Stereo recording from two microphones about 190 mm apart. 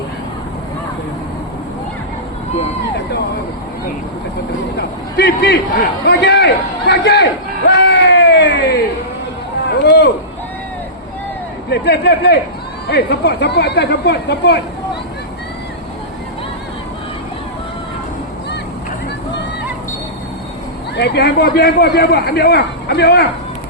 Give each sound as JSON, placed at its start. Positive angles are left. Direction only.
{"t": 4.8, "sound": "a man's voice", "side_deg": 60}
{"t": 7.8, "sound": "a sound", "side_deg": 65}
{"t": 11.7, "sound": "a man's voice", "side_deg": 60}
{"t": 20.9, "sound": "a man's voice", "side_deg": 60}